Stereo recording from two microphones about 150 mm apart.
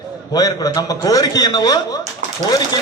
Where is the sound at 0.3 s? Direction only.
25° left (ahead or behind).